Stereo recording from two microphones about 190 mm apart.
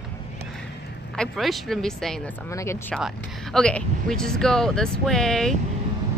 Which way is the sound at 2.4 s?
15° left (ahead or behind).